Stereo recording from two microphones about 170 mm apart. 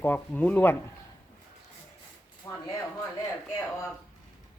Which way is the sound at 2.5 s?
15° left (ahead or behind).